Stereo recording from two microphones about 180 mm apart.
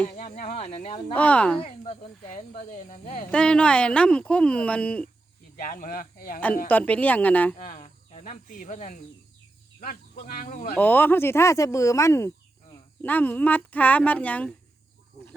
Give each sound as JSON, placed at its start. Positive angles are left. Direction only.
{"t": 0.1, "sound": "speech", "side_deg": 40}
{"t": 1.1, "sound": "speech", "side_deg": 10}
{"t": 1.8, "sound": "speech", "side_deg": 40}
{"t": 3.3, "sound": "speech", "side_deg": 5}
{"t": 5.5, "sound": "speech", "side_deg": 50}
{"t": 6.7, "sound": "speech", "side_deg": 10}
{"t": 7.6, "sound": "speech", "side_deg": 45}
{"t": 10.8, "sound": "speech", "side_deg": 10}